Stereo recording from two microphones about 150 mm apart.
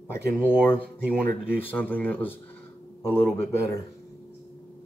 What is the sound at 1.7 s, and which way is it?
Speech, 10° left (ahead or behind).